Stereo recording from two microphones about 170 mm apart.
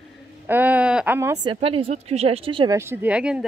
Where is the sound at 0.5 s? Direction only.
10° right (ahead or behind).